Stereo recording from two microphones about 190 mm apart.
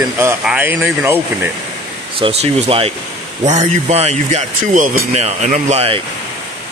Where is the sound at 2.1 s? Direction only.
30° right (ahead or behind).